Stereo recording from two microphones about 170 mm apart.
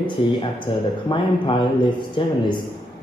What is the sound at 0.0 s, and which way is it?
Speech, 30° left (ahead or behind).